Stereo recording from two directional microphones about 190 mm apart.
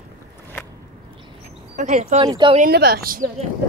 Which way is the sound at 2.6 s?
55° right (ahead or behind).